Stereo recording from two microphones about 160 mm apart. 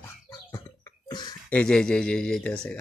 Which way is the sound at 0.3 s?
20° left (ahead or behind).